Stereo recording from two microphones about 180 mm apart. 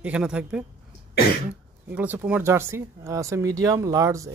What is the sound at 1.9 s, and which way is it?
Speech, 10° right (ahead or behind).